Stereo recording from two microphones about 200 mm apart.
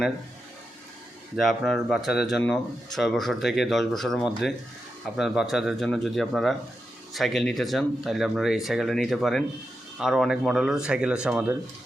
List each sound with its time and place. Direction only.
1.4 s speech: centre (ahead or behind)